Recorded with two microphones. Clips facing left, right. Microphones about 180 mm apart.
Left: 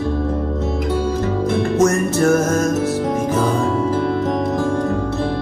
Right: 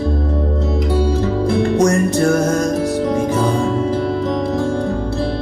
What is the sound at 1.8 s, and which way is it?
Music, 35° right (ahead or behind).